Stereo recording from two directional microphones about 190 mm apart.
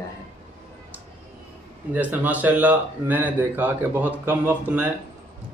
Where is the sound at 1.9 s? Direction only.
10° right (ahead or behind).